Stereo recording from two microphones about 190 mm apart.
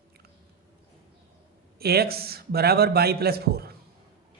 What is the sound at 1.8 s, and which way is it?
A man's voice, 55° right (ahead or behind).